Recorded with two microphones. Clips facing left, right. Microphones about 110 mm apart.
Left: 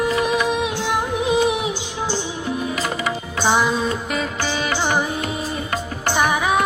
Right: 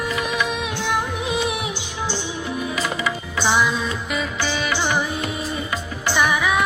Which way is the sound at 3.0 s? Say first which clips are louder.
Left 4 dB; 45° left (ahead or behind).